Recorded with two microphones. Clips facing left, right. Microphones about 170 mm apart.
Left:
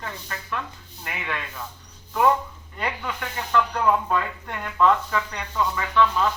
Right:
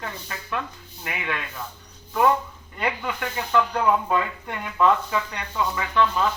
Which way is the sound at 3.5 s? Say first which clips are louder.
Even; 5° right (ahead or behind).